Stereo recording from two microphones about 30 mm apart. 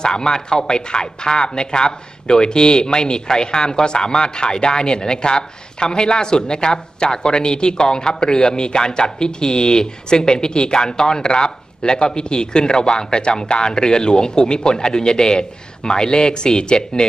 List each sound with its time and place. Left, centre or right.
0.0 s speech: left